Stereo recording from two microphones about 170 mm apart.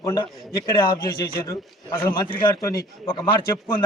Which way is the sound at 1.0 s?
60° left (ahead or behind).